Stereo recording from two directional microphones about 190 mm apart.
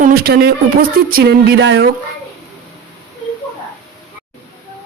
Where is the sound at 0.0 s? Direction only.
50° right (ahead or behind).